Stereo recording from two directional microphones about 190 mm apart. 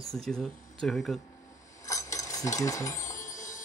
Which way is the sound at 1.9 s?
15° left (ahead or behind).